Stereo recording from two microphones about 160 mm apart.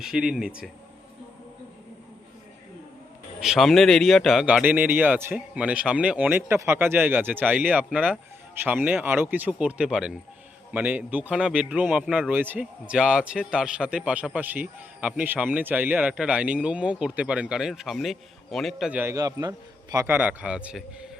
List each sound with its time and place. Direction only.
0.0 s speech: 5° right (ahead or behind)
3.4 s a man's voice: centre (ahead or behind)
19.1 s a man's voice: 20° right (ahead or behind)
20.1 s a man's voice: 10° right (ahead or behind)